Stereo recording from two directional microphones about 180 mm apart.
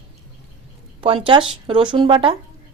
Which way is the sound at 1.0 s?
30° right (ahead or behind).